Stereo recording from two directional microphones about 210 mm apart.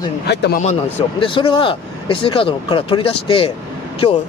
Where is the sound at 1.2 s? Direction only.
25° left (ahead or behind).